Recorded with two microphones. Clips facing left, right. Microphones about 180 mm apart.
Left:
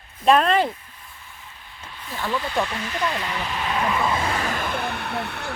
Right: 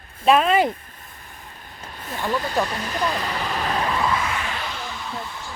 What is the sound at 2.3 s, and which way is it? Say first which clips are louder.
Speech: right 1 dB; 40° right (ahead or behind).